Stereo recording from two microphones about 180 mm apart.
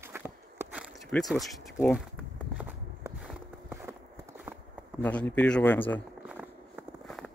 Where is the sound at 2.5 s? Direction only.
10° right (ahead or behind).